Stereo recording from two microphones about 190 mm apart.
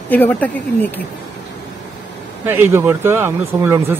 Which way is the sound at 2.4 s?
10° right (ahead or behind).